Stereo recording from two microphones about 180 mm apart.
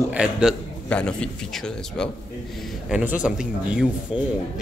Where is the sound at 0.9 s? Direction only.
5° left (ahead or behind).